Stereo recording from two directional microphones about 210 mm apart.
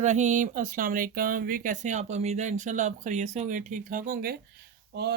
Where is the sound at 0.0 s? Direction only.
35° right (ahead or behind).